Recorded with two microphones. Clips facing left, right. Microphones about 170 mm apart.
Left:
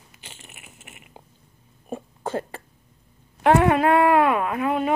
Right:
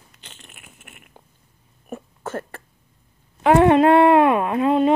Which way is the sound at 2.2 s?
15° left (ahead or behind).